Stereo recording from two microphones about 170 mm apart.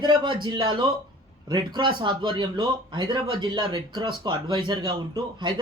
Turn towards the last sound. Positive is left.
turn(degrees=-25)  # may be behind; listen again after turning